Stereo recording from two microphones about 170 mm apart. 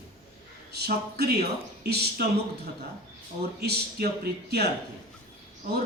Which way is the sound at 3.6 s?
70° right (ahead or behind).